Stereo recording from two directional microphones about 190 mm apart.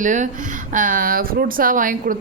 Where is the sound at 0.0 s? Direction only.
40° right (ahead or behind).